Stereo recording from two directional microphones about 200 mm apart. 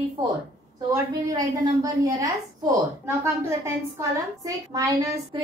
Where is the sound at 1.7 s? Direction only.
15° right (ahead or behind).